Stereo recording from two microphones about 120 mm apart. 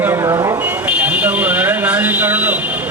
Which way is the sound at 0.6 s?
15° right (ahead or behind).